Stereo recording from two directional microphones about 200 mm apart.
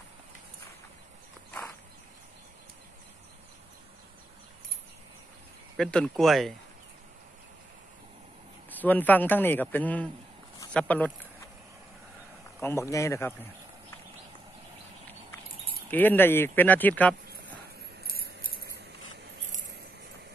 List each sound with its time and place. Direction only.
5.8 s speech: 5° left (ahead or behind)
8.6 s a man's voice: 10° left (ahead or behind)
12.5 s speech: 15° left (ahead or behind)
15.9 s a man's voice: 10° left (ahead or behind)
18.0 s keys jangling: 50° right (ahead or behind)